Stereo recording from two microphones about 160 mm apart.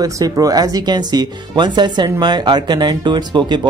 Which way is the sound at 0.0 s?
20° right (ahead or behind).